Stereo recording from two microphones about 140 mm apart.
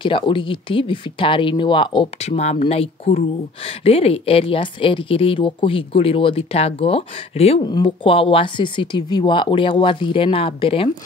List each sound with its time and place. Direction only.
0.0 s speech: 35° left (ahead or behind)
2.2 s a woman's voice: 50° left (ahead or behind)
7.6 s speech: 30° left (ahead or behind)